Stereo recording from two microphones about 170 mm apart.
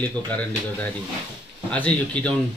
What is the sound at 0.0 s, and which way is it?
Speech, 10° left (ahead or behind).